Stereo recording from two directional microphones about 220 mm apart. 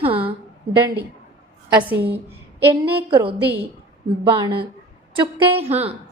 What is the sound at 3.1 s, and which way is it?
A woman's voice, 20° right (ahead or behind).